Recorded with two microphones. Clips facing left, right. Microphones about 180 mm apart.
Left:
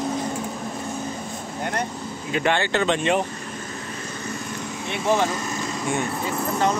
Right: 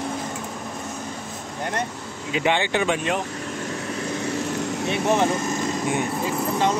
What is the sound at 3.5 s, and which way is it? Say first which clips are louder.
Vehicle: right 5 dB; 80° right.